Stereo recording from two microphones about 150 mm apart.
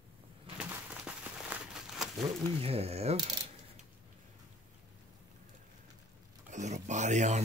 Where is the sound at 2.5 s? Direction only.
40° right (ahead or behind).